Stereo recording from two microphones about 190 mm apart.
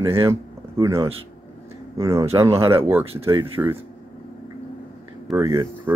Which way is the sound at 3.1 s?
30° right (ahead or behind).